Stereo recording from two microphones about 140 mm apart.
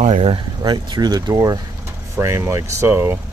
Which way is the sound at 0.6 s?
30° right (ahead or behind).